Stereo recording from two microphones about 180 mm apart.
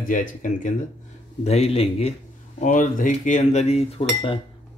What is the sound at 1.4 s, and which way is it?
Cutlery, 35° left (ahead or behind).